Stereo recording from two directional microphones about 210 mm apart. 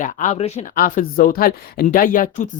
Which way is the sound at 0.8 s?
40° left (ahead or behind).